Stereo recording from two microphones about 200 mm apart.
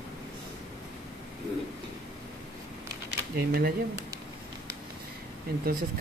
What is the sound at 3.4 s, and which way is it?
Speech, 50° right (ahead or behind).